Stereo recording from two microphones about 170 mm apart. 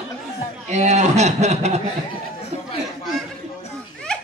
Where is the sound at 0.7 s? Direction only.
40° right (ahead or behind).